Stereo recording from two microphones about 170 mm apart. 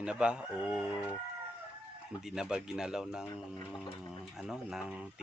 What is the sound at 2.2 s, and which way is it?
Speech, 5° right (ahead or behind).